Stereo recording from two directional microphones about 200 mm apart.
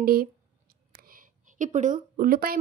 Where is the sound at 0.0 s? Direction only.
50° right (ahead or behind).